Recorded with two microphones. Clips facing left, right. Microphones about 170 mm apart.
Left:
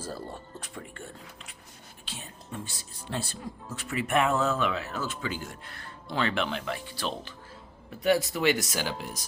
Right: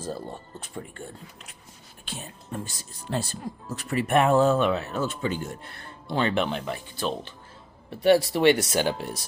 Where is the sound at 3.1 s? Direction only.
40° right (ahead or behind).